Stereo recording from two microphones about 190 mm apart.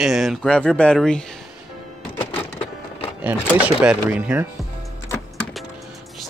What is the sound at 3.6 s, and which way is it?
Speech, 5° right (ahead or behind).